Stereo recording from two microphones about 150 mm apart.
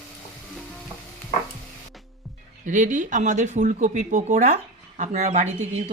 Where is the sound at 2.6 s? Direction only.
55° right (ahead or behind).